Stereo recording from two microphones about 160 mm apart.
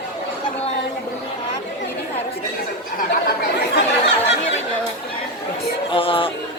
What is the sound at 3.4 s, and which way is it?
Speech, 90° left.